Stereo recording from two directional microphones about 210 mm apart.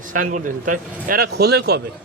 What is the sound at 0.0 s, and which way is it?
Speech, 40° right (ahead or behind).